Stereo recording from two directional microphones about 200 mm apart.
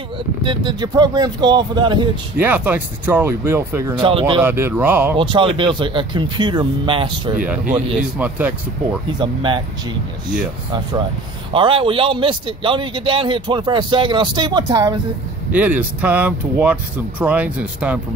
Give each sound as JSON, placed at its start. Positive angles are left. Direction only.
{"t": 0.4, "sound": "speech", "side_deg": -25}
{"t": 2.4, "sound": "speech", "side_deg": -10}
{"t": 4.4, "sound": "speech", "side_deg": -10}
{"t": 5.1, "sound": "speech", "side_deg": -25}
{"t": 8.2, "sound": "speech", "side_deg": -5}
{"t": 9.2, "sound": "speech", "side_deg": -25}
{"t": 11.5, "sound": "speech", "side_deg": -25}
{"t": 15.5, "sound": "speech", "side_deg": -10}